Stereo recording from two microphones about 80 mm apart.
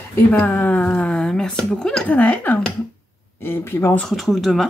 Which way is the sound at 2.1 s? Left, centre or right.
Centre.